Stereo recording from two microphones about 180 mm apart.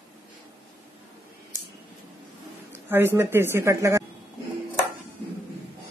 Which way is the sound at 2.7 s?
15° right (ahead or behind).